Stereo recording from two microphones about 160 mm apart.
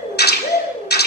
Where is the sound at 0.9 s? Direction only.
90° left.